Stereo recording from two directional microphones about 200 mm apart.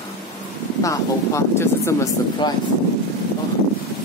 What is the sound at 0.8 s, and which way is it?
Speech, 15° left (ahead or behind).